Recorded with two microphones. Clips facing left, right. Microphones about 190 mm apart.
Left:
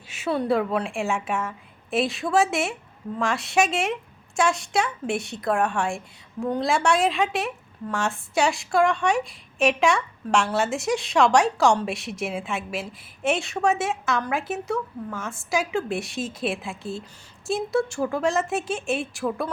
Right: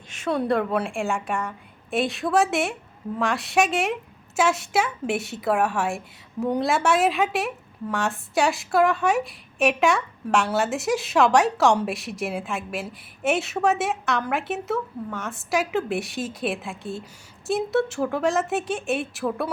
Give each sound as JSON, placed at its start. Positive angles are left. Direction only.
{"t": 0.1, "sound": "a woman's voice", "side_deg": 5}